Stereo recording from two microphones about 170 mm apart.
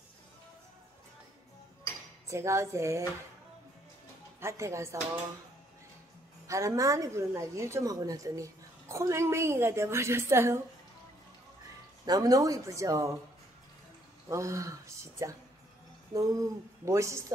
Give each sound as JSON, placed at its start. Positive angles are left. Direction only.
{"t": 2.2, "sound": "a woman's voice", "side_deg": -15}
{"t": 4.4, "sound": "speech", "side_deg": -15}
{"t": 6.4, "sound": "a woman's voice", "side_deg": -20}
{"t": 12.1, "sound": "speech", "side_deg": -20}
{"t": 14.3, "sound": "a woman's voice", "side_deg": -20}